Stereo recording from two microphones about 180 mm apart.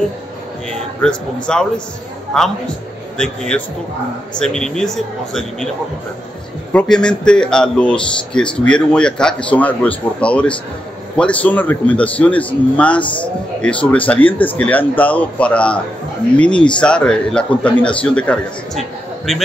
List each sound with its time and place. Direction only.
0.7 s a man's voice: 5° left (ahead or behind)
6.7 s a man's voice: 5° left (ahead or behind)